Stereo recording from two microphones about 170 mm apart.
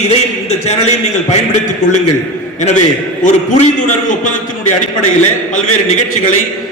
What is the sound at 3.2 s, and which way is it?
Speech, 45° left (ahead or behind).